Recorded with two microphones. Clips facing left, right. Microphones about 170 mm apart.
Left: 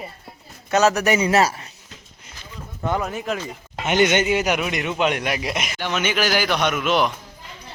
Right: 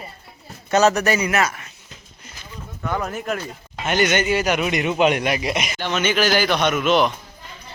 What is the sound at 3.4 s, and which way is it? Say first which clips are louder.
Speech: even; 20° left (ahead or behind).